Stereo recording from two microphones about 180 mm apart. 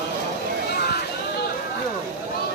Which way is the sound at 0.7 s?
60° left (ahead or behind).